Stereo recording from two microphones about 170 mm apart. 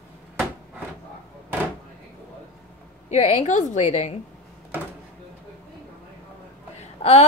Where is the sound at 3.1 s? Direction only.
40° left (ahead or behind).